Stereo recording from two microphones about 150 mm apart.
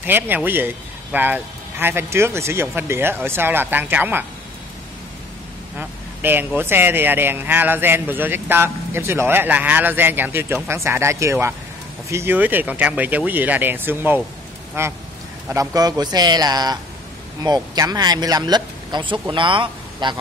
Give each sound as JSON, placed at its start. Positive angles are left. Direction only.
{"t": 0.0, "sound": "speech", "side_deg": -10}
{"t": 5.8, "sound": "speech", "side_deg": -15}